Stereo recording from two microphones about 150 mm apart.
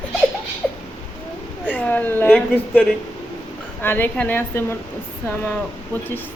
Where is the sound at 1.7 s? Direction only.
10° left (ahead or behind).